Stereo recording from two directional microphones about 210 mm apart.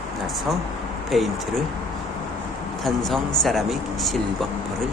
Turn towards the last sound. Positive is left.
turn(degrees=0)  # may be behind; listen again after turning